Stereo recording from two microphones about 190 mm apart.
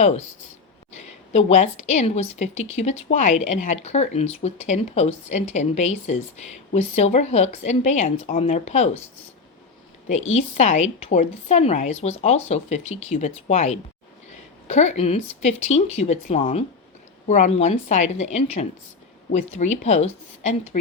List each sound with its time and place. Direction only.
0.9 s a woman's voice: 35° left (ahead or behind)
10.3 s a woman's voice: 35° left (ahead or behind)